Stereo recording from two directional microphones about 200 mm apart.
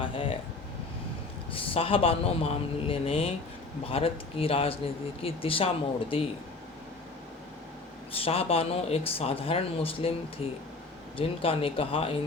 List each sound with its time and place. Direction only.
0.0 s air conditioning: 25° left (ahead or behind)
1.5 s speech: 30° left (ahead or behind)
8.1 s speech: 30° left (ahead or behind)